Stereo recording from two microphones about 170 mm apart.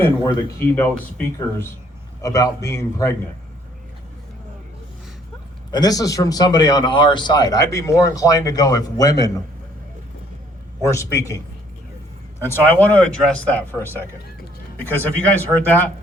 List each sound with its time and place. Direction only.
0.0 s speech: 15° left (ahead or behind)
5.7 s speech: 20° left (ahead or behind)
10.8 s speech: 15° left (ahead or behind)
12.5 s speech: 10° left (ahead or behind)